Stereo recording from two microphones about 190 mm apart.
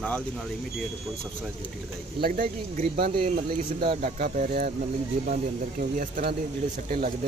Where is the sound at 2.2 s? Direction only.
45° right (ahead or behind).